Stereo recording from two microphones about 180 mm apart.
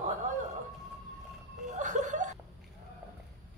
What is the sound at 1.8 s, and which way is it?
Chuckle, 45° right (ahead or behind).